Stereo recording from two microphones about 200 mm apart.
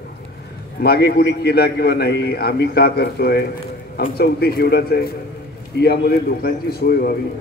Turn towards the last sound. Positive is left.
turn(degrees=50)  # may be behind; listen again after turning